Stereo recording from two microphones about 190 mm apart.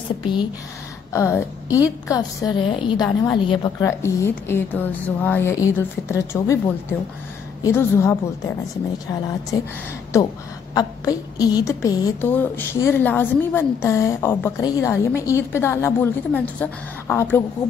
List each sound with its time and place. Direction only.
1.1 s a woman's voice: 15° left (ahead or behind)
4.0 s a woman's voice: 15° left (ahead or behind)
9.5 s a woman's voice: 20° left (ahead or behind)